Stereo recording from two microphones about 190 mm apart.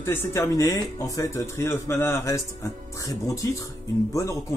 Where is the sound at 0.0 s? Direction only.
10° left (ahead or behind).